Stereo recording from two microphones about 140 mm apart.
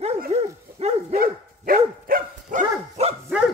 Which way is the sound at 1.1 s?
90° right.